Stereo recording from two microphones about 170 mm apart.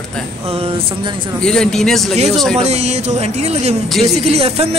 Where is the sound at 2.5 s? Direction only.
40° right (ahead or behind).